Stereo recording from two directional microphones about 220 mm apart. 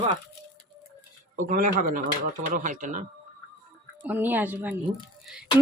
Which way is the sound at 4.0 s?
10° right (ahead or behind).